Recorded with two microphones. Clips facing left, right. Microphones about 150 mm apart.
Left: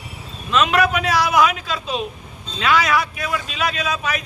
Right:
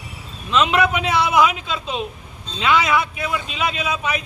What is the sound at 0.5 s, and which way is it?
A man's voice, 25° right (ahead or behind).